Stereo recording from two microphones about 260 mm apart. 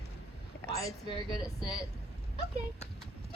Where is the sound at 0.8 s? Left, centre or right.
Centre.